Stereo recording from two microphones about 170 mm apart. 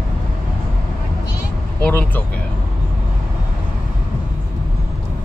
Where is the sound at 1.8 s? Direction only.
10° left (ahead or behind).